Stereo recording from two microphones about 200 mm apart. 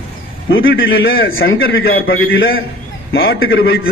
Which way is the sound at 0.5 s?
70° left (ahead or behind).